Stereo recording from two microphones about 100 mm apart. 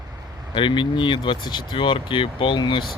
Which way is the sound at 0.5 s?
55° left (ahead or behind).